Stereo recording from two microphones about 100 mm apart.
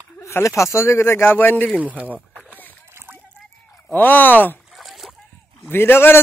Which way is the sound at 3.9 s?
20° left (ahead or behind).